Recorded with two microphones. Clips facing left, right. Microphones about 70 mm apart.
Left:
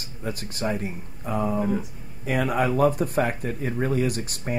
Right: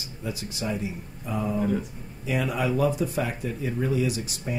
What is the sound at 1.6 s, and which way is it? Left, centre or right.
Speech, centre.